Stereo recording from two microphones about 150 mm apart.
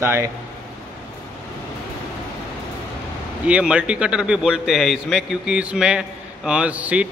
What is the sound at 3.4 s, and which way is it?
A man's voice, 5° right (ahead or behind).